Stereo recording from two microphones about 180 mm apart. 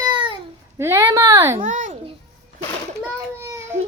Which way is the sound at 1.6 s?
45° right (ahead or behind).